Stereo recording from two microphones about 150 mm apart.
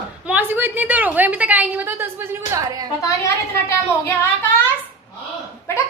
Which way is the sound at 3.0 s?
20° left (ahead or behind).